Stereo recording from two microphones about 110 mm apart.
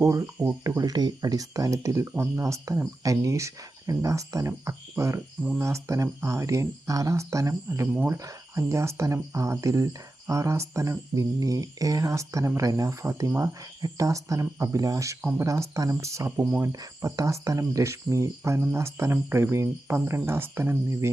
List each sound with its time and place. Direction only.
0.0 s speech: 30° right (ahead or behind)
0.8 s speech: 35° right (ahead or behind)
15.2 s speech: 15° right (ahead or behind)
15.4 s speech: 30° right (ahead or behind)